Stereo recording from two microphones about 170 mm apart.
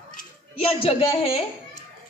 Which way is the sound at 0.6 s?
35° left (ahead or behind).